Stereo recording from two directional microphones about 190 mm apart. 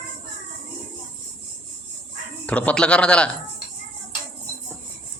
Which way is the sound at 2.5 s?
5° left (ahead or behind).